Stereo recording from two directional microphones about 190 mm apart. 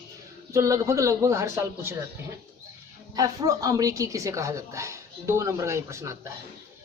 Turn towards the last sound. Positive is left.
turn(degrees=-15)  # may be behind; listen again after turning